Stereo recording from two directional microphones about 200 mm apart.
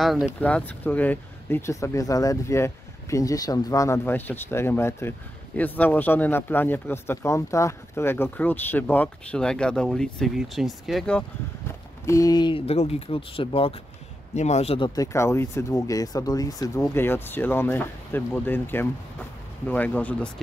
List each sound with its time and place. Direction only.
0.0 s speech: centre (ahead or behind)
12.1 s speech: 20° left (ahead or behind)
15.0 s speech: 15° left (ahead or behind)